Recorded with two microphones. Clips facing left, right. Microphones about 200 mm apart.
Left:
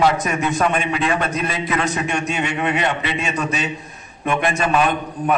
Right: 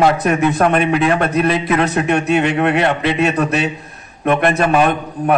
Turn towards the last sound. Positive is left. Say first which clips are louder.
# right 4 dB
turn(degrees=-55)  # may be behind; listen again after turning